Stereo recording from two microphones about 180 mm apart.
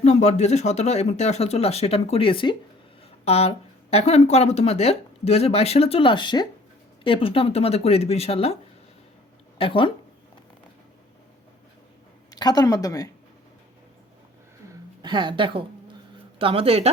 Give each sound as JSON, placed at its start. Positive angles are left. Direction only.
{"t": 0.0, "sound": "speech", "side_deg": 40}
{"t": 9.6, "sound": "speech", "side_deg": 30}
{"t": 12.3, "sound": "speech", "side_deg": 20}
{"t": 14.7, "sound": "a sound", "side_deg": -25}
{"t": 16.4, "sound": "speech", "side_deg": -30}